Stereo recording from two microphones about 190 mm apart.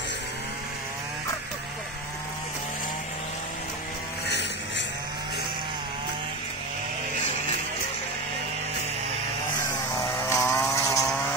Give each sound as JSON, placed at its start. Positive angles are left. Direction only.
{"t": 4.3, "sound": "vehicle", "side_deg": 65}
{"t": 9.7, "sound": "vehicle", "side_deg": 15}